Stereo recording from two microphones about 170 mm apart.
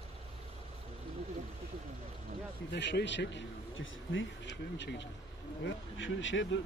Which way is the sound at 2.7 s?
90° left.